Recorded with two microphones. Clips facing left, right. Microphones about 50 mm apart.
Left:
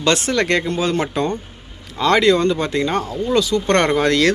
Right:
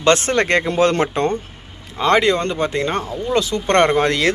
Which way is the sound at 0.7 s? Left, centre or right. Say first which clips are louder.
Right 4 dB; right.